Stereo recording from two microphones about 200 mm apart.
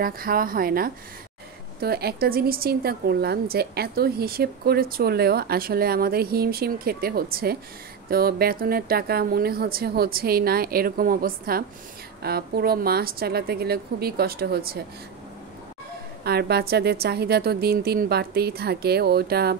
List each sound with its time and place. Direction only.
0.0 s a woman's voice: 45° right (ahead or behind)
16.3 s a woman's voice: 50° right (ahead or behind)